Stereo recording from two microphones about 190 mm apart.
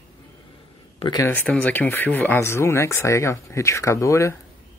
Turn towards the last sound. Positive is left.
turn(degrees=15)  # may be behind; listen again after turning